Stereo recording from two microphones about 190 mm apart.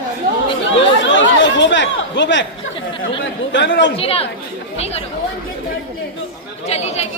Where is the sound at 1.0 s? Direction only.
75° left (ahead or behind).